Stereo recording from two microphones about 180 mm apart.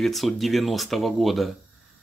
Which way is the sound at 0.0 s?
Centre (ahead or behind).